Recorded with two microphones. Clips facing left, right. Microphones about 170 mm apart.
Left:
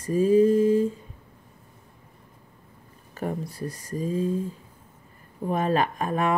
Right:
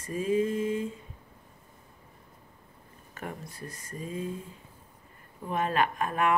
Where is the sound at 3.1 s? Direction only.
35° left (ahead or behind).